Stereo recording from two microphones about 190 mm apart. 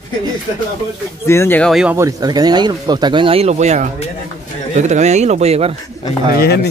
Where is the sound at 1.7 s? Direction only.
5° right (ahead or behind).